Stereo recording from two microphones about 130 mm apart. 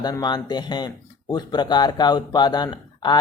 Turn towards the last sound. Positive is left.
turn(degrees=35)  # may be behind; listen again after turning